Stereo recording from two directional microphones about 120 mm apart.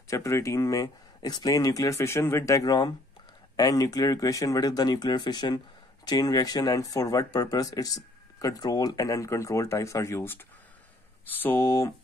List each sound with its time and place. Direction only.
0.1 s speech: 25° left (ahead or behind)